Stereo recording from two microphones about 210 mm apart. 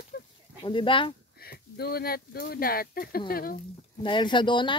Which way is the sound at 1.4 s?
50° left (ahead or behind).